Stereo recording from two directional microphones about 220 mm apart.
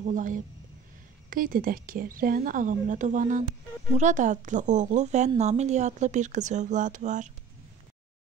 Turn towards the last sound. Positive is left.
turn(degrees=-35)  # may be behind; listen again after turning